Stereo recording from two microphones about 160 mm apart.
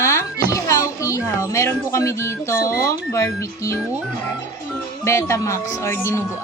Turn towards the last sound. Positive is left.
turn(degrees=15)  # may be behind; listen again after turning